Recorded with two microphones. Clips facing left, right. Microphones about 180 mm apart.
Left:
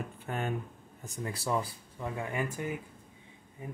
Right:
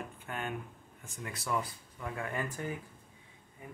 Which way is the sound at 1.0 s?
35° left (ahead or behind).